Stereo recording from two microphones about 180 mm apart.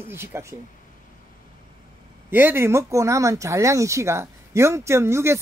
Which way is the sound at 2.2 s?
10° right (ahead or behind).